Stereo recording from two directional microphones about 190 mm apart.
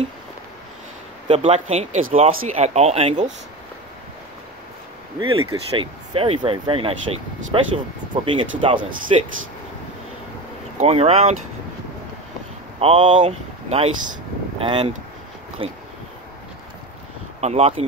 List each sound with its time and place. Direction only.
1.2 s speech: 30° right (ahead or behind)
5.4 s speech: 25° right (ahead or behind)
10.8 s speech: 35° right (ahead or behind)
12.8 s speech: 25° right (ahead or behind)
13.1 s speech: 35° right (ahead or behind)
17.4 s speech: 35° right (ahead or behind)